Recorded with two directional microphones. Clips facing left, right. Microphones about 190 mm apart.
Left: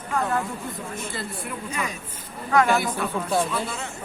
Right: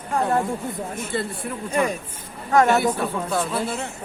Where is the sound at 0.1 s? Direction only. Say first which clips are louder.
Right 4 dB; 35° right (ahead or behind).